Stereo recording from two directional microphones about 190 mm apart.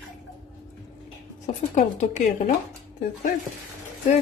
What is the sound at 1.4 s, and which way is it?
A woman's voice, 40° left (ahead or behind).